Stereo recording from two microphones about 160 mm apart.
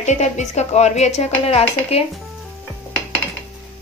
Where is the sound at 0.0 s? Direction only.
45° left (ahead or behind).